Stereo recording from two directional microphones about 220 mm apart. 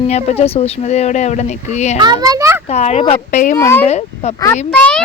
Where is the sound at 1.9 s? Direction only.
20° right (ahead or behind).